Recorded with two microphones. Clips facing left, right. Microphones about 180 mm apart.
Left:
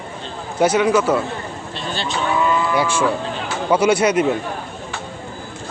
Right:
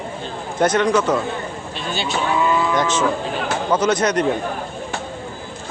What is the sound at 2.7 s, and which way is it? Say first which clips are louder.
Speech: even; 10° left (ahead or behind).